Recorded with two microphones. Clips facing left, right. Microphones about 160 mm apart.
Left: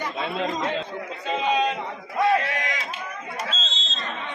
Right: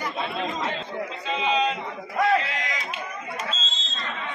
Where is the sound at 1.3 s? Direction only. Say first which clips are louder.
Left 1 dB; 50° left (ahead or behind).